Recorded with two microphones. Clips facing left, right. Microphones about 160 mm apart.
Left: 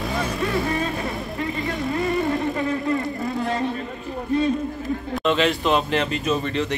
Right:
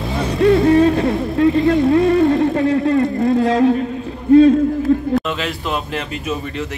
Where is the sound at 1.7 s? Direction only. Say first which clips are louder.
Right 11 dB; 65° right (ahead or behind); by 3.7 s 90° right.